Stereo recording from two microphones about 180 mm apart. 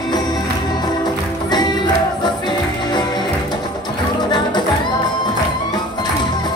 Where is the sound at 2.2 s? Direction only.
25° left (ahead or behind).